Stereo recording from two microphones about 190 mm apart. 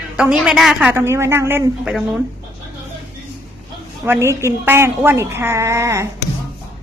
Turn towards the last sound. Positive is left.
turn(degrees=-15)  # may be behind; listen again after turning